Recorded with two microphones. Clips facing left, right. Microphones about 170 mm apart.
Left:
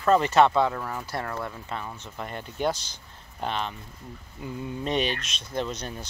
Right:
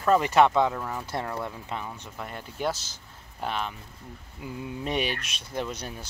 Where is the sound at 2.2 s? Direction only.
5° right (ahead or behind).